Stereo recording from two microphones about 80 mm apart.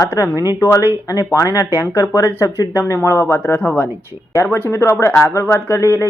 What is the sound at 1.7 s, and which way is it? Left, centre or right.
Speech, left.